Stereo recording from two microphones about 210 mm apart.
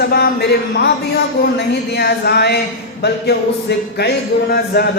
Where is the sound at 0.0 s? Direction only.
50° left (ahead or behind).